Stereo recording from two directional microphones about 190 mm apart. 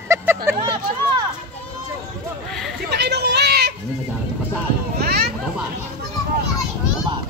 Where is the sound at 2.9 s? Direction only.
60° right (ahead or behind).